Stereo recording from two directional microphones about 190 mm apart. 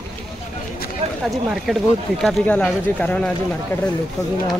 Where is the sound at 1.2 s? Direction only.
Centre (ahead or behind).